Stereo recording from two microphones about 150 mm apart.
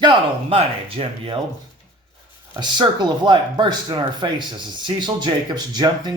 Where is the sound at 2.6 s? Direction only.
30° right (ahead or behind).